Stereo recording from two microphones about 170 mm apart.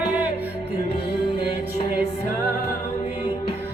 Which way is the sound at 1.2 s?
35° left (ahead or behind).